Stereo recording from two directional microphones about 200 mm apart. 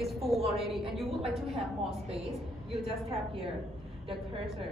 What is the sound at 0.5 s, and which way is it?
A woman's voice, centre (ahead or behind).